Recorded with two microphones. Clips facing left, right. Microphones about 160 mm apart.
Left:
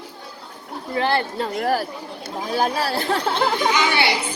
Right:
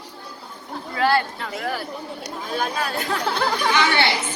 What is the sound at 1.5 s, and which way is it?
Speech, 45° left (ahead or behind).